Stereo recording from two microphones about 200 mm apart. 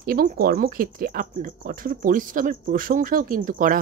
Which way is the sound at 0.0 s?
45° right (ahead or behind).